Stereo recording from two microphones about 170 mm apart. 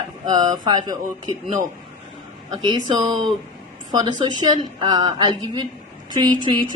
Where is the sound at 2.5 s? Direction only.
25° right (ahead or behind).